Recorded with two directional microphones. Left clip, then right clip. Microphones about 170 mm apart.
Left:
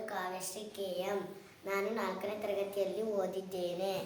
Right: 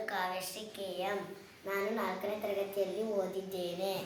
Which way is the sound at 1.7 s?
20° left (ahead or behind).